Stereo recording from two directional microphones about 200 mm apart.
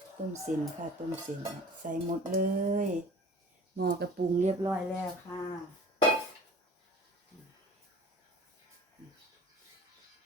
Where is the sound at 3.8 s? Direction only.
55° right (ahead or behind).